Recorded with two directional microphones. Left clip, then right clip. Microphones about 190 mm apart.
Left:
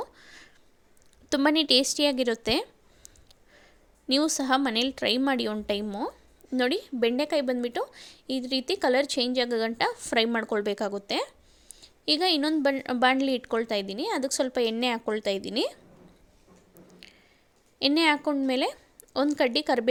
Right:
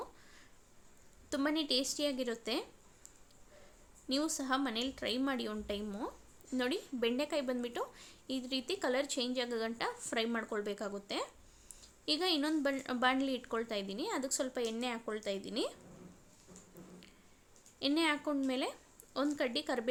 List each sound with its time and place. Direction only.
0.0 s a sound: 40° left (ahead or behind)
1.3 s a woman's voice: 40° left (ahead or behind)
4.1 s a woman's voice: 40° left (ahead or behind)
5.8 s a woman's voice: 30° left (ahead or behind)
17.7 s a woman's voice: 40° left (ahead or behind)